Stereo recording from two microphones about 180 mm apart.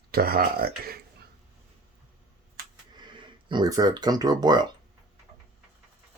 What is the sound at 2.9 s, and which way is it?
Speech, 25° right (ahead or behind).